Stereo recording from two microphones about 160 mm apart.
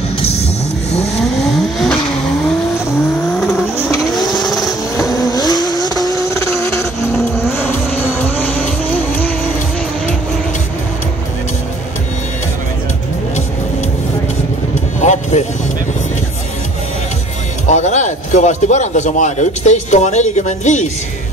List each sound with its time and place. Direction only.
0.2 s music: 40° left (ahead or behind)
0.9 s vehicle: 40° left (ahead or behind)
3.3 s vehicle: 5° left (ahead or behind)
5.1 s vehicle: 25° left (ahead or behind)
8.4 s vehicle: 10° left (ahead or behind)
15.0 s music: 45° left (ahead or behind)
17.6 s speech: 45° left (ahead or behind)